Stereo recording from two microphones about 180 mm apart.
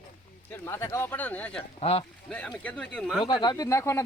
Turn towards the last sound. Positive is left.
turn(degrees=15)  # may be behind; listen again after turning